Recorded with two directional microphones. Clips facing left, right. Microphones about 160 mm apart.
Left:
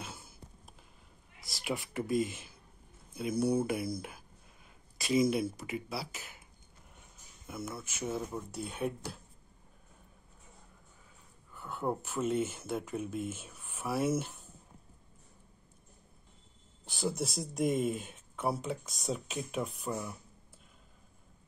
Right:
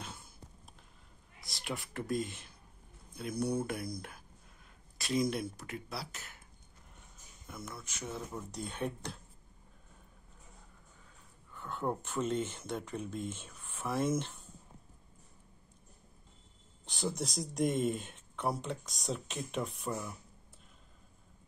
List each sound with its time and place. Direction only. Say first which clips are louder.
0.0 s a sound: left 1 dB; 5° left (ahead or behind)
1.4 s speech: left 4 dB; centre (ahead or behind)
7.4 s speech: left 5 dB; 5° left (ahead or behind)
11.5 s speech: left 1 dB; 5° left (ahead or behind)
16.8 s speech: left 2 dB; centre (ahead or behind)